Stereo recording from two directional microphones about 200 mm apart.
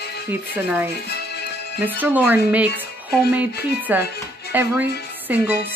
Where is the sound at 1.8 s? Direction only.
10° right (ahead or behind).